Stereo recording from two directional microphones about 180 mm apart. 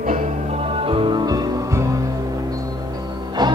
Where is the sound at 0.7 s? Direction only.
30° right (ahead or behind).